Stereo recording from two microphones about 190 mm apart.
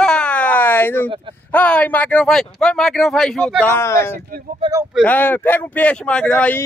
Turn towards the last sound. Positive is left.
turn(degrees=5)  # may be behind; listen again after turning